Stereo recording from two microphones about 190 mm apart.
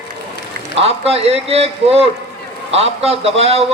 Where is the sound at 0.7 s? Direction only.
30° right (ahead or behind).